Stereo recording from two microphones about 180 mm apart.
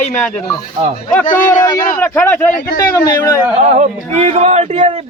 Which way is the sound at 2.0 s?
10° left (ahead or behind).